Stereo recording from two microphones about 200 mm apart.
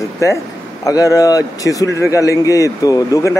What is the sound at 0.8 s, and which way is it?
Speech, 15° left (ahead or behind).